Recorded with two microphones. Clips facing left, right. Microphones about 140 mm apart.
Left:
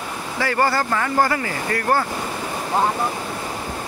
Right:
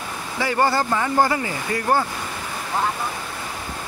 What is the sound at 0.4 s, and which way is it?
Speech, 20° right (ahead or behind).